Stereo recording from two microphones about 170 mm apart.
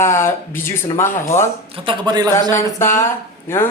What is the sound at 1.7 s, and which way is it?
Speech, 30° right (ahead or behind).